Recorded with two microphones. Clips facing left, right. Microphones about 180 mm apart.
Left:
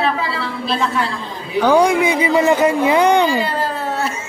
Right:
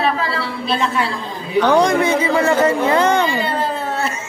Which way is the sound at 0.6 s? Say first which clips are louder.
Even; centre (ahead or behind).